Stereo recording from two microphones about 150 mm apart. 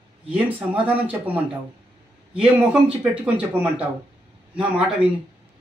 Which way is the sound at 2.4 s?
10° right (ahead or behind).